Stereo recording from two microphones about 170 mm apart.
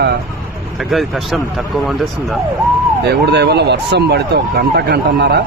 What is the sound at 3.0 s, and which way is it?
Speech, 80° right.